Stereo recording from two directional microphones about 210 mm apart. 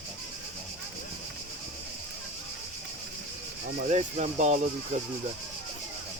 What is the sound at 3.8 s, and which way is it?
Speech, 35° right (ahead or behind).